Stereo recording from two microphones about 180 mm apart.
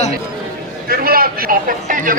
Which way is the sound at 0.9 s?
55° right (ahead or behind).